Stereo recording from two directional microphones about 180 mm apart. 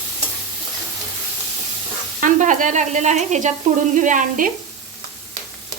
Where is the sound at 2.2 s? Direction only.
45° right (ahead or behind).